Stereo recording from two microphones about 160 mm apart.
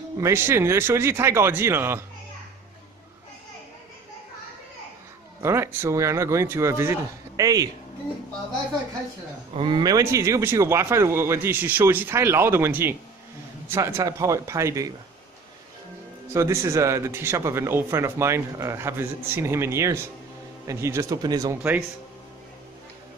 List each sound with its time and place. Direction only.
0.2 s a man's voice: 15° right (ahead or behind)
5.4 s a man's voice: 15° right (ahead or behind)
9.5 s a man's voice: 35° right (ahead or behind)
16.3 s a man's voice: 20° right (ahead or behind)